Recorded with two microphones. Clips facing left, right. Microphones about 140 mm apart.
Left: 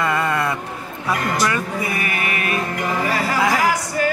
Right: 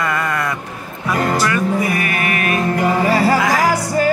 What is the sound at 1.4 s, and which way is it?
Music, 25° left (ahead or behind).